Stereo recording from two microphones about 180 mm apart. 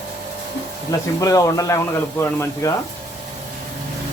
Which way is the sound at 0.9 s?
20° left (ahead or behind).